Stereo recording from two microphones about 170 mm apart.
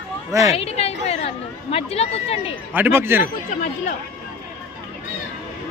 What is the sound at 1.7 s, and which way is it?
Speech, 35° left (ahead or behind).